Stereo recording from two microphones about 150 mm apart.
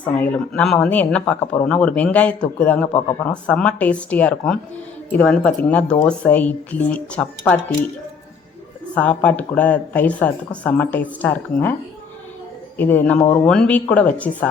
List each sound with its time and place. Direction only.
0.0 s speech: 10° left (ahead or behind)
9.0 s speech: 10° left (ahead or behind)
12.7 s speech: 15° left (ahead or behind)